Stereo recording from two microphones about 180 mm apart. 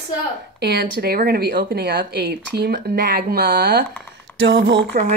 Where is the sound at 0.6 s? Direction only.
65° right (ahead or behind).